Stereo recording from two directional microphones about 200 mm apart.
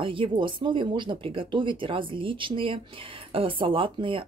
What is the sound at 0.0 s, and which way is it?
A woman's voice, 25° right (ahead or behind).